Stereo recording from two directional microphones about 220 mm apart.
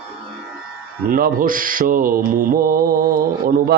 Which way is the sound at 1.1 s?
40° right (ahead or behind).